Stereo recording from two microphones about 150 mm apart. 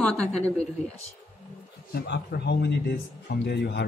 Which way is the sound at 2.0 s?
90° left.